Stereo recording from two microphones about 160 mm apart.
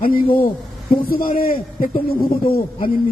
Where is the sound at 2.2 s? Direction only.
30° left (ahead or behind).